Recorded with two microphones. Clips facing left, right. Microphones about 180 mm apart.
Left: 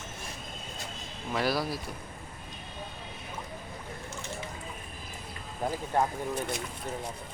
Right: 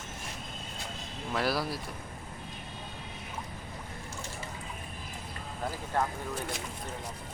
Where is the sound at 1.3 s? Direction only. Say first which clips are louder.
Left 1 dB; centre (ahead or behind).